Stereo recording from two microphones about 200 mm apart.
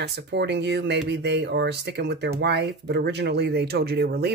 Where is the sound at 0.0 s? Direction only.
55° right (ahead or behind).